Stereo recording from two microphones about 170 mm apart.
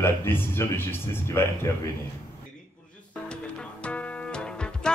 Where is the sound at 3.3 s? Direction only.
5° left (ahead or behind).